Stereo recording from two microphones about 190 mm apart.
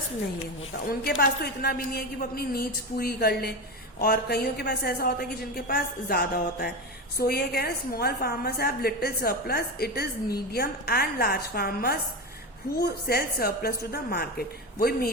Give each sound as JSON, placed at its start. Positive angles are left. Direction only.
{"t": 0.9, "sound": "a woman's voice", "side_deg": 55}